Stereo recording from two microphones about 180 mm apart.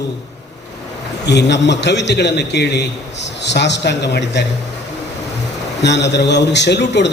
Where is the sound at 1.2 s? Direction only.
70° left (ahead or behind).